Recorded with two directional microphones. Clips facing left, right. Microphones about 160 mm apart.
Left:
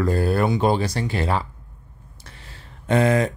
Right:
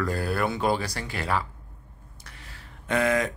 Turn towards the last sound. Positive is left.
turn(degrees=30)  # may be behind; listen again after turning